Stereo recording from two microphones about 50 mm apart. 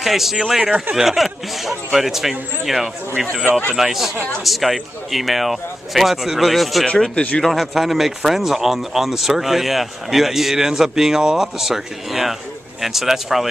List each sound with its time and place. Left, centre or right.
0.0 s speech: centre
7.2 s speech: centre
7.4 s speech: centre